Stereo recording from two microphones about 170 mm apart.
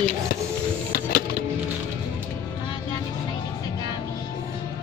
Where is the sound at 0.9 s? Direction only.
60° left (ahead or behind).